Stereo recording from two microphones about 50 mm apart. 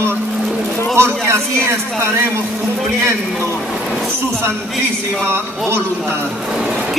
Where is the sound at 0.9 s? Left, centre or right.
Right.